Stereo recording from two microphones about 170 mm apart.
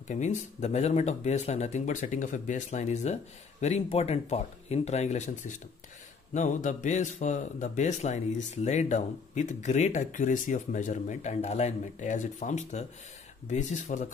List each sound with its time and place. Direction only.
0.1 s speech: 45° left (ahead or behind)
6.3 s speech: 45° left (ahead or behind)